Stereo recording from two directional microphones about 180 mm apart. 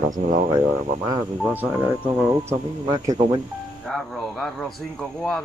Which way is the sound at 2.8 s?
25° right (ahead or behind).